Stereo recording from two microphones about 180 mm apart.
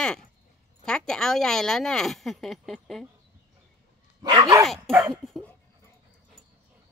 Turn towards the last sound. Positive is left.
turn(degrees=0)  # may be behind; listen again after turning